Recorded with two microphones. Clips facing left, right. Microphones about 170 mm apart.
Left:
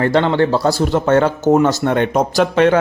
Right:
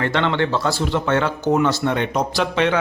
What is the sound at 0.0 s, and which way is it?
Speech, 40° left (ahead or behind).